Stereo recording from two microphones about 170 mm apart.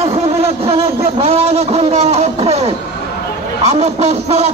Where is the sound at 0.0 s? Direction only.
35° right (ahead or behind).